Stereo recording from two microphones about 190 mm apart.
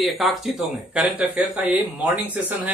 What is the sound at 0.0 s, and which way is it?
A man's voice, centre (ahead or behind).